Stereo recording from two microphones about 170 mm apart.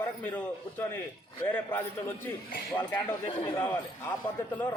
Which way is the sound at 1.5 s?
10° left (ahead or behind).